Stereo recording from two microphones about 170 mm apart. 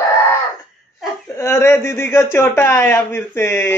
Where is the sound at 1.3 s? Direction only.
15° left (ahead or behind).